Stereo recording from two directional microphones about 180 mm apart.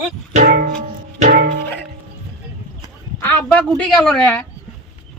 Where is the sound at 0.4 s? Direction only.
60° right (ahead or behind).